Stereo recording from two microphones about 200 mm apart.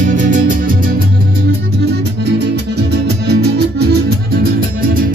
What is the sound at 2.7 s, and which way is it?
Music, 55° right (ahead or behind).